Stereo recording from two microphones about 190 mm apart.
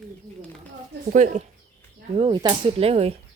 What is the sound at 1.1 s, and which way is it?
Speech, 40° right (ahead or behind).